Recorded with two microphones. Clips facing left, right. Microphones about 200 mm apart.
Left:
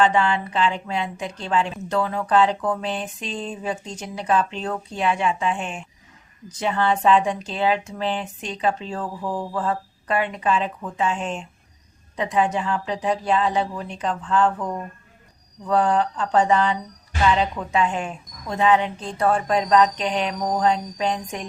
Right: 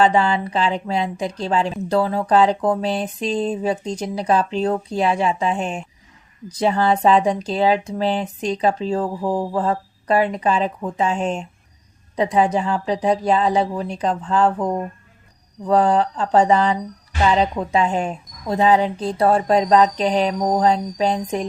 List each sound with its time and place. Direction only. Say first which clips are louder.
0.0 s a woman's voice: right 3 dB; 35° right (ahead or behind)